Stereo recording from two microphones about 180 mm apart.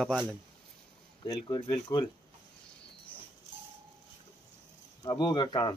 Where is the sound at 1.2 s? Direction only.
20° left (ahead or behind).